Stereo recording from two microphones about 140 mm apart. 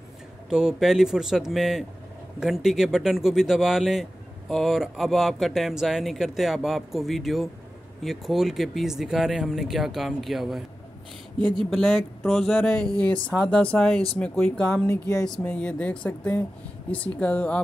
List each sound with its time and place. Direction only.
0.5 s speech: 5° right (ahead or behind)
11.3 s speech: 30° right (ahead or behind)
11.7 s speech: centre (ahead or behind)
14.9 s music: 25° left (ahead or behind)
15.2 s speech: 5° left (ahead or behind)